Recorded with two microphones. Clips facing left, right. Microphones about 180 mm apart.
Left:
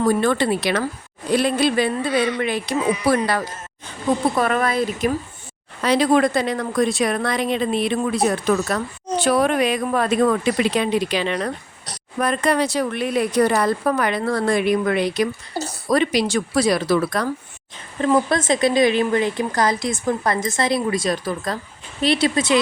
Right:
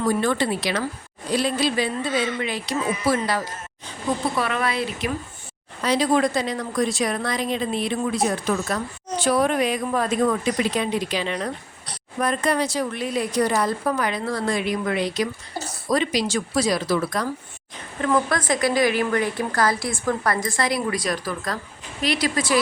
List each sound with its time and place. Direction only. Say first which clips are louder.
0.0 s speech: left 3 dB; 60° left (ahead or behind)
4.4 s speech: left 5 dB; 45° left (ahead or behind)
5.8 s a woman's voice: left 3 dB; 60° left (ahead or behind)
18.0 s a woman's voice: left 4 dB; 25° left (ahead or behind)